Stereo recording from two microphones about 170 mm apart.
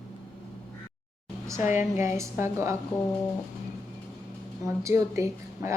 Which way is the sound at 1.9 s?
15° right (ahead or behind).